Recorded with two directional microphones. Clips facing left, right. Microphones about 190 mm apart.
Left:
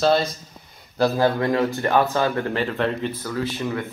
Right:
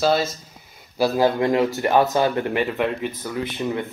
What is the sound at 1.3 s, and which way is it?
Speech, 15° right (ahead or behind).